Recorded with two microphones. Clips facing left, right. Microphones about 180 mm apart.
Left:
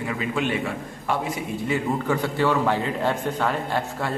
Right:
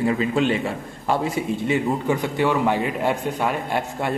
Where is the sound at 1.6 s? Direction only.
20° right (ahead or behind).